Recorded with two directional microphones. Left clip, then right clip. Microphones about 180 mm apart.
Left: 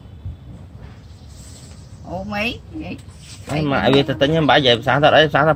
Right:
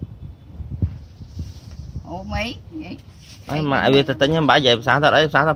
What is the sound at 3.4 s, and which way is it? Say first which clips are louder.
Speech: even; 30° right (ahead or behind).